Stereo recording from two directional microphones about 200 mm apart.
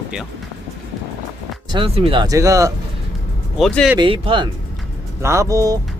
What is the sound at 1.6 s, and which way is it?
Speech, 25° right (ahead or behind).